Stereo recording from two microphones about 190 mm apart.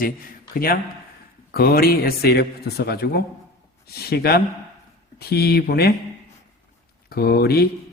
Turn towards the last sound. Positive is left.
turn(degrees=55)  # may be behind; listen again after turning